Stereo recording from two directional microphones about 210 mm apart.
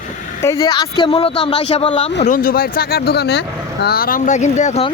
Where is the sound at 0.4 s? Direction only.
15° left (ahead or behind).